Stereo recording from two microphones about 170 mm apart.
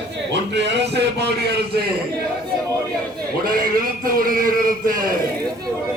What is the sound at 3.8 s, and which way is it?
A man's voice, 55° right (ahead or behind).